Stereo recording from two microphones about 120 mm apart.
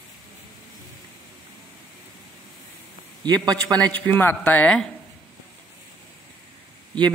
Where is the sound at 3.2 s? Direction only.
35° right (ahead or behind).